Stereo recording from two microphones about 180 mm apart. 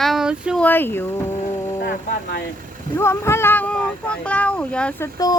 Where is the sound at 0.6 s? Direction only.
10° left (ahead or behind).